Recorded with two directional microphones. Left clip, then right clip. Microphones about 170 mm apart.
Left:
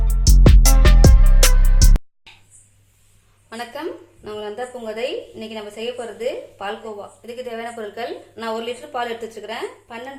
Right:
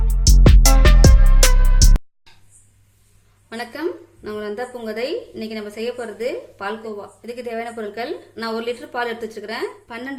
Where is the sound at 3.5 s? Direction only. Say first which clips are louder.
Even; 65° right (ahead or behind).